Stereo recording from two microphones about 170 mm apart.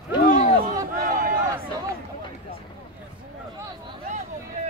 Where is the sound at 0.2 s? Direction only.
50° left (ahead or behind).